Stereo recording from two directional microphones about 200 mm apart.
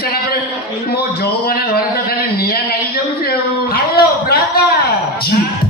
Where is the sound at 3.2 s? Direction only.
50° left (ahead or behind).